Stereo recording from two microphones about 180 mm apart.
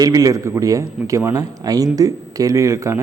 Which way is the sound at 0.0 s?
20° right (ahead or behind).